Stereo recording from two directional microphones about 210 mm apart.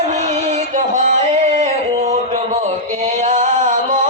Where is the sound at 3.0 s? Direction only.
35° right (ahead or behind).